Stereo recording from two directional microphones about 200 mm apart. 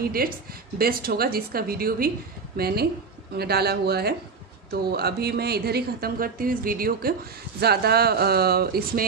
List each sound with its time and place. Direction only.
0.0 s a woman's voice: 45° right (ahead or behind)